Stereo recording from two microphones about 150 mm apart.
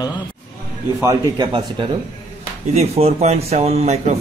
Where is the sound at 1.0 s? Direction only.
25° right (ahead or behind).